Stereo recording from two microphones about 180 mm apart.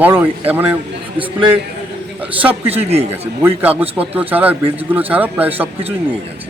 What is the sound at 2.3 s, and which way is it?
Speech, 10° right (ahead or behind).